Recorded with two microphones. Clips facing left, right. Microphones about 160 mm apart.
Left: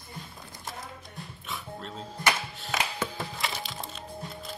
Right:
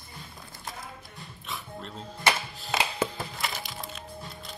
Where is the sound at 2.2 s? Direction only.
30° right (ahead or behind).